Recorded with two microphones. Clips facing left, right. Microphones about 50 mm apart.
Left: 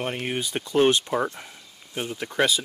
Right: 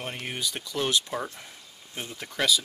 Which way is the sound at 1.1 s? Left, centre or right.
Left.